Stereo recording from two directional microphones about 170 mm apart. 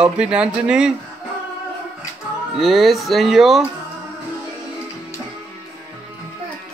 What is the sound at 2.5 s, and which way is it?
Speech, centre (ahead or behind).